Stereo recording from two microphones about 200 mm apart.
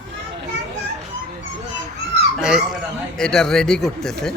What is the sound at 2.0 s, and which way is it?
Babbling, 60° right (ahead or behind).